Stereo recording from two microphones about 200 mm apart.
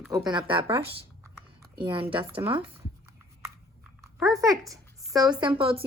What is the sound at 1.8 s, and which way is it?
Speech, 25° right (ahead or behind).